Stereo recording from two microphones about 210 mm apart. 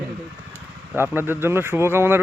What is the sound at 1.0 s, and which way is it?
A man's voice, 10° right (ahead or behind).